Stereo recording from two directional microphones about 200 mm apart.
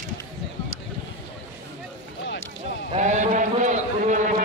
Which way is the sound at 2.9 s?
35° right (ahead or behind).